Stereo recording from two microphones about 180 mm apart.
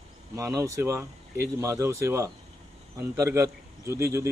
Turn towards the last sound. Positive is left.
turn(degrees=-15)  # may be behind; listen again after turning